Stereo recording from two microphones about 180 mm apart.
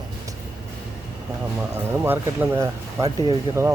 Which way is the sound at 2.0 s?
15° right (ahead or behind).